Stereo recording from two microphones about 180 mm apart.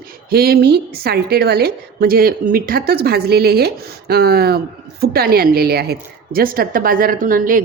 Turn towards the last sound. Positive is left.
turn(degrees=-50)  # may be behind; listen again after turning